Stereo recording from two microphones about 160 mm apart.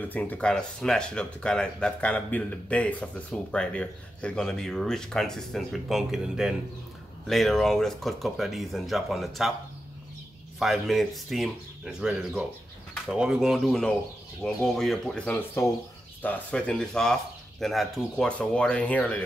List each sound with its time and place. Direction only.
0.0 s speech: 10° left (ahead or behind)
10.6 s speech: centre (ahead or behind)